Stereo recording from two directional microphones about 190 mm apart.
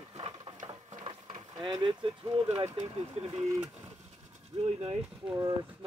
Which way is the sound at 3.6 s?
10° right (ahead or behind).